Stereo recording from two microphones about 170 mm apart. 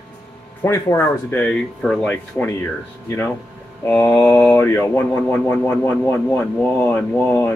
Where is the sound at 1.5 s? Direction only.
5° left (ahead or behind).